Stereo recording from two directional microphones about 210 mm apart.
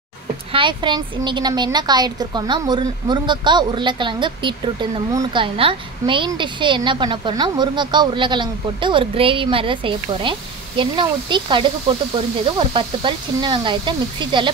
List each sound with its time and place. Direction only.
0.5 s a woman's voice: 25° right (ahead or behind)